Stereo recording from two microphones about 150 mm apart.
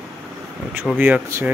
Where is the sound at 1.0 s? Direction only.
15° right (ahead or behind).